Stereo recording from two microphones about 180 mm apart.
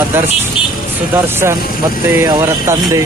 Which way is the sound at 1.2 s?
15° right (ahead or behind).